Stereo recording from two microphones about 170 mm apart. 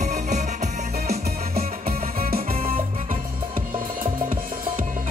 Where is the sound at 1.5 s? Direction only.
60° right (ahead or behind).